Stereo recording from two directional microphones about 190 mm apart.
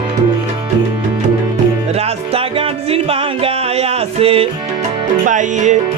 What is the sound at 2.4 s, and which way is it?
Music, 30° right (ahead or behind).